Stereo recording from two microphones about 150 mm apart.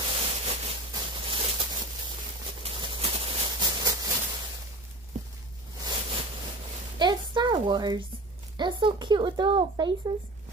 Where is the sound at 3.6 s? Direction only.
25° right (ahead or behind).